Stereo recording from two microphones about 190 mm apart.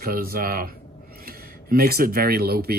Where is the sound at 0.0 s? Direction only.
50° right (ahead or behind).